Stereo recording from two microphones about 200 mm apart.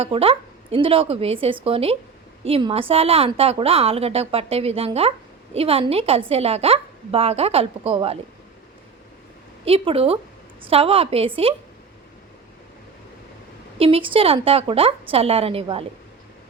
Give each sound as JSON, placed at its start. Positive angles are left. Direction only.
{"t": 0.0, "sound": "a woman's voice", "side_deg": -30}
{"t": 9.6, "sound": "a woman's voice", "side_deg": -30}
{"t": 13.7, "sound": "a woman's voice", "side_deg": -30}